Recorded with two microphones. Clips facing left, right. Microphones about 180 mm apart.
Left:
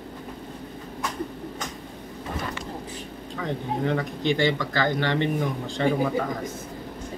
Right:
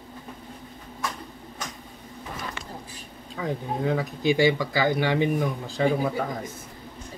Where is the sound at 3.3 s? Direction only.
5° right (ahead or behind).